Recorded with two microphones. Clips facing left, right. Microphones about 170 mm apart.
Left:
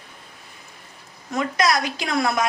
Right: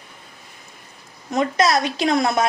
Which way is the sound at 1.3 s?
25° right (ahead or behind).